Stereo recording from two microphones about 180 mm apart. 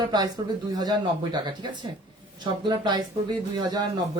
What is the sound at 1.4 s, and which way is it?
Speech, 25° right (ahead or behind).